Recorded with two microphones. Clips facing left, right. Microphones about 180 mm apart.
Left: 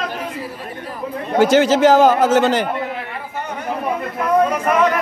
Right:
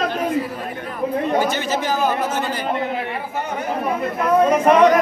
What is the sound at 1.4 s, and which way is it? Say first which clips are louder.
A man's voice: left 9 dB; 90° left.